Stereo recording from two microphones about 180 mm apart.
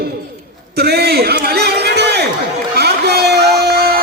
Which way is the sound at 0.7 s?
60° right (ahead or behind).